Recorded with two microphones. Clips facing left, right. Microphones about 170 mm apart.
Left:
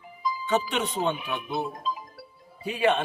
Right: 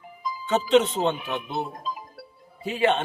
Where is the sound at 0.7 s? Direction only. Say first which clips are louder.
Right 7 dB; 20° right (ahead or behind).